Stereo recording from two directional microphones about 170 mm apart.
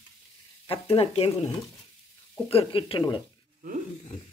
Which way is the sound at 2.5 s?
30° left (ahead or behind).